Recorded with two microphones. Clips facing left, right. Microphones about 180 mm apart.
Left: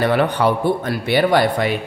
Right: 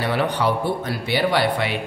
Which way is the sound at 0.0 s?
55° left (ahead or behind).